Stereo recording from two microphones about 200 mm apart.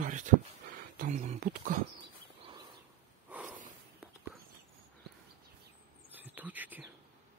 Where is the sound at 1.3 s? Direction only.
45° right (ahead or behind).